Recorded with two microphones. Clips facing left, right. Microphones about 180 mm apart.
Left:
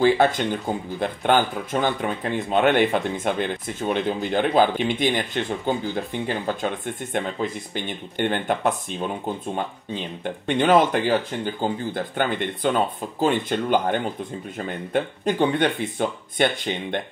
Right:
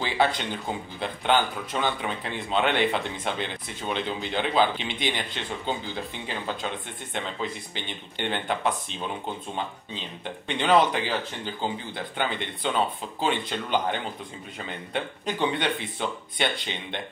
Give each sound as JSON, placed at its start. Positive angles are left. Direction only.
{"t": 0.0, "sound": "speech", "side_deg": 50}